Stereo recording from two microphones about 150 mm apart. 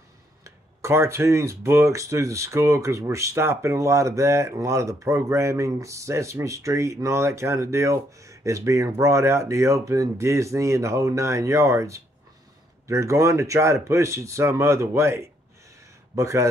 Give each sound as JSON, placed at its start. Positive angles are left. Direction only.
{"t": 0.4, "sound": "speech", "side_deg": -20}